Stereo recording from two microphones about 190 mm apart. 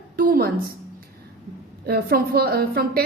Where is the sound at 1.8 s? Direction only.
55° right (ahead or behind).